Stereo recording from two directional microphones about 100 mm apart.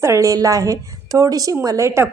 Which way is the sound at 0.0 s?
30° right (ahead or behind).